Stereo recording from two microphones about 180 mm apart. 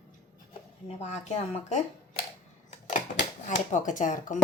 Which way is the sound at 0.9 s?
35° left (ahead or behind).